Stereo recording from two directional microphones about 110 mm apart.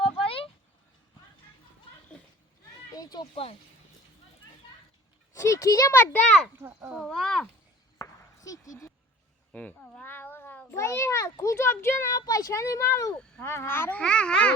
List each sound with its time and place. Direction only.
0.0 s a sound: 55° left (ahead or behind)
2.9 s children playing: 35° left (ahead or behind)
5.3 s a child's voice: 30° left (ahead or behind)
6.6 s a child's voice: 15° right (ahead or behind)
7.0 s speech: 5° left (ahead or behind)
7.9 s chop: 30° left (ahead or behind)
9.5 s cat: 10° left (ahead or behind)
10.8 s a child's voice: 25° left (ahead or behind)
14.0 s babbling: 10° left (ahead or behind)